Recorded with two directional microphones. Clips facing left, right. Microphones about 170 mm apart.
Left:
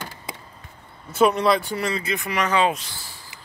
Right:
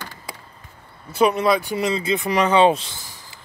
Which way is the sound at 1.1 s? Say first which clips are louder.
Right 1 dB; centre (ahead or behind).